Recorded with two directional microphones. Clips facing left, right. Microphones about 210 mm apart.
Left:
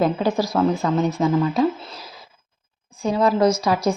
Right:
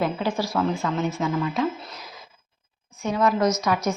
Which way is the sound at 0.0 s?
40° left (ahead or behind).